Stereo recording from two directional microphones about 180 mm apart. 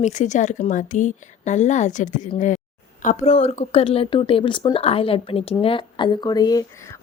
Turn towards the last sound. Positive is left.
turn(degrees=15)  # may be behind; listen again after turning